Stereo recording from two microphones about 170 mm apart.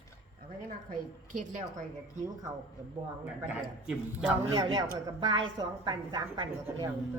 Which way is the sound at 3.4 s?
10° right (ahead or behind).